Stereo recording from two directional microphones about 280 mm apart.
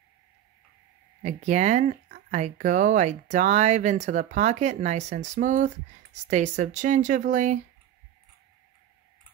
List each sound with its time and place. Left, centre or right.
1.2 s speech: right